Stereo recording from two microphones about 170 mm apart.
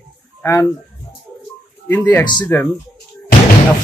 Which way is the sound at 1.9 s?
10° left (ahead or behind).